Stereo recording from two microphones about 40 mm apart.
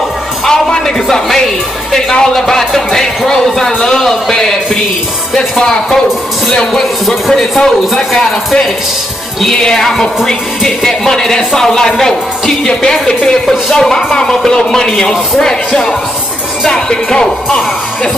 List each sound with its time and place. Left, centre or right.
0.5 s music: centre
1.9 s speech: centre
6.5 s speech: centre